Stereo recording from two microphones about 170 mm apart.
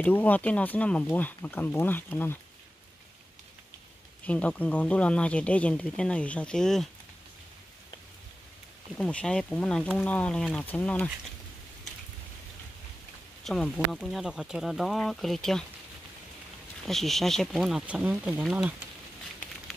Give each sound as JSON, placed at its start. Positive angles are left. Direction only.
{"t": 0.0, "sound": "speech", "side_deg": 10}
{"t": 4.2, "sound": "speech", "side_deg": 10}
{"t": 8.9, "sound": "speech", "side_deg": 5}
{"t": 13.4, "sound": "speech", "side_deg": 0}
{"t": 16.8, "sound": "speech", "side_deg": 0}